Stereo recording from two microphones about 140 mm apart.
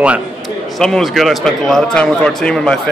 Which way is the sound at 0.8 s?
5° left (ahead or behind).